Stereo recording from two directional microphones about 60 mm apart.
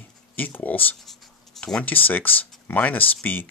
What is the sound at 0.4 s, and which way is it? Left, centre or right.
Speech, left.